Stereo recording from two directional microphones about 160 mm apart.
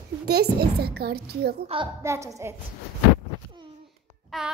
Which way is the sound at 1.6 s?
35° right (ahead or behind).